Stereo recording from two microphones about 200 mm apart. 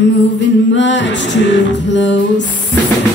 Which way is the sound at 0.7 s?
65° left (ahead or behind).